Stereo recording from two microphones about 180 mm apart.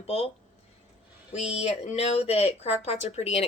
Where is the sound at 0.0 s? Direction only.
30° left (ahead or behind).